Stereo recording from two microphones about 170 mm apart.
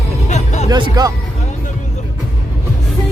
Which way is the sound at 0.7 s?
25° right (ahead or behind).